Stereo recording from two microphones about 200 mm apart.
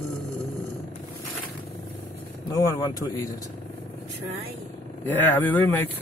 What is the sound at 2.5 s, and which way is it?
Speech, 15° left (ahead or behind).